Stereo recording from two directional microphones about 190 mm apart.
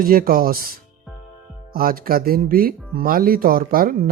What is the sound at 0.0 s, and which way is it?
Speech, 50° right (ahead or behind).